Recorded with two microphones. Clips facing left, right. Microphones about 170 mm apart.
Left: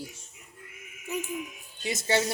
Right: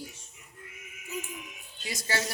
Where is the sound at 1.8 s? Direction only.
25° left (ahead or behind).